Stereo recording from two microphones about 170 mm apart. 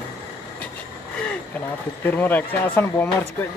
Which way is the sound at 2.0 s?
10° left (ahead or behind).